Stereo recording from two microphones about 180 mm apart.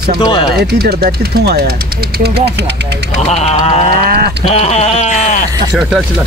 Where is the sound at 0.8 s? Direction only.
60° right (ahead or behind).